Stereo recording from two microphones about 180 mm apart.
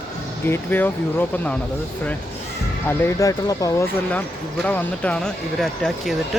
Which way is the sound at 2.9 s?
15° left (ahead or behind).